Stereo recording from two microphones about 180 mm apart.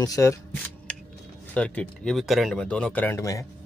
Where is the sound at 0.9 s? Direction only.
5° left (ahead or behind).